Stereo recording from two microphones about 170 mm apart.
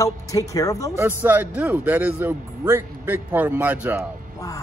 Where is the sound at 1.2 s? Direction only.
10° right (ahead or behind).